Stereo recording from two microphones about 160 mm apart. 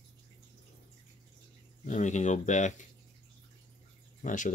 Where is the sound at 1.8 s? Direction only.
50° left (ahead or behind).